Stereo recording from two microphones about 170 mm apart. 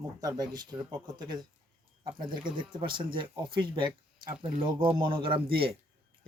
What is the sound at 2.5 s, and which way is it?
Speech, 25° right (ahead or behind).